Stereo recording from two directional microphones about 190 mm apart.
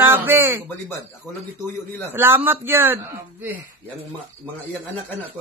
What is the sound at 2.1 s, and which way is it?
A man's voice, 10° right (ahead or behind).